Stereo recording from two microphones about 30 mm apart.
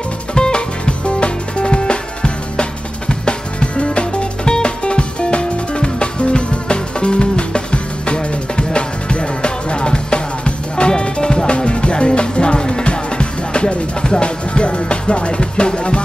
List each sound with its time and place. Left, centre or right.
0.3 s music: left